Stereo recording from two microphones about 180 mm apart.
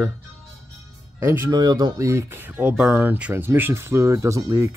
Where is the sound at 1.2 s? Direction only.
15° right (ahead or behind).